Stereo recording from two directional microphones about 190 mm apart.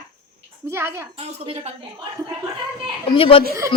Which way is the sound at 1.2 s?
30° right (ahead or behind).